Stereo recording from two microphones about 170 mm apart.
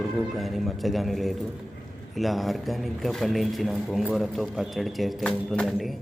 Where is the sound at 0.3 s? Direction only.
Centre (ahead or behind).